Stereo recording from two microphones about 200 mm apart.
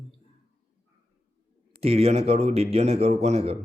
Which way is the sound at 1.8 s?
30° right (ahead or behind).